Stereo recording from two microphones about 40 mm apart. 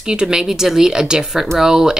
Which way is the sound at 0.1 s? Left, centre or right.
Centre.